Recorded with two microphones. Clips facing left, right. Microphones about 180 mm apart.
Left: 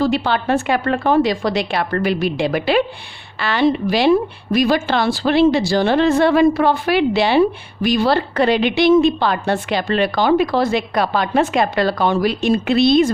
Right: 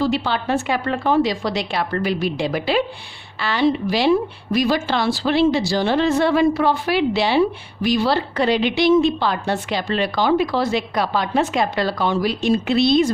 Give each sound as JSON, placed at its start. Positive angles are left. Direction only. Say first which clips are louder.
{"t": 0.0, "sound": "speech", "louder": "left 3 dB", "side_deg": 55}